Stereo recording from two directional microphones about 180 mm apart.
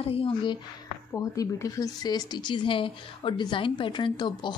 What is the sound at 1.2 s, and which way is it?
Speech, 15° left (ahead or behind).